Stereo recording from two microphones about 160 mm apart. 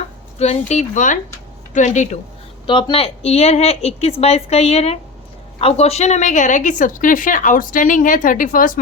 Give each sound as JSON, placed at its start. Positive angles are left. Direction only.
{"t": 0.3, "sound": "speech", "side_deg": 45}
{"t": 2.6, "sound": "a woman's voice", "side_deg": 30}